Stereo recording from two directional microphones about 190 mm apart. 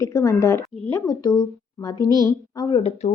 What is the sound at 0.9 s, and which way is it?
A woman's voice, 15° left (ahead or behind).